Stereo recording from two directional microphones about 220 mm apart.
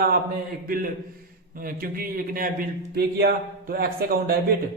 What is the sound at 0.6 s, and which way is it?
A man's voice, 40° right (ahead or behind).